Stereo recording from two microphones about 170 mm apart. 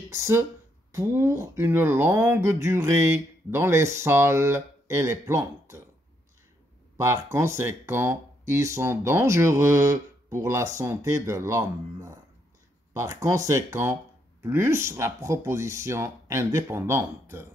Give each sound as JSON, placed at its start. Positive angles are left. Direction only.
{"t": 0.1, "sound": "speech", "side_deg": -15}
{"t": 7.0, "sound": "speech", "side_deg": -15}